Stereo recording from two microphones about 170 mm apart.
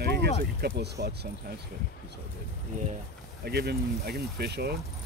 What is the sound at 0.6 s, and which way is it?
Speech, 75° right (ahead or behind).